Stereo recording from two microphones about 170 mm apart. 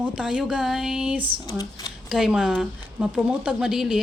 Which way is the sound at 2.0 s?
Centre (ahead or behind).